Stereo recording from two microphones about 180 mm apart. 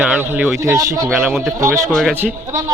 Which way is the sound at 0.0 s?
10° right (ahead or behind).